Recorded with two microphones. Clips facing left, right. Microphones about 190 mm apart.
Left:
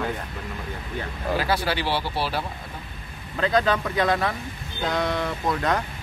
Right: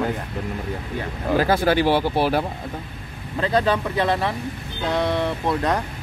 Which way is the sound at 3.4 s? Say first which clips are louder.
Right 1 dB; 30° right (ahead or behind).